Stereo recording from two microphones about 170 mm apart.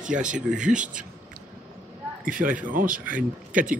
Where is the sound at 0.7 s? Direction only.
50° right (ahead or behind).